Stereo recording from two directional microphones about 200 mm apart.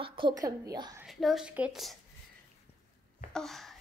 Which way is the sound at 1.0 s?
Centre (ahead or behind).